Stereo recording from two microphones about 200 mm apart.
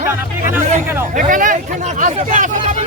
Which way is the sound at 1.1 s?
40° right (ahead or behind).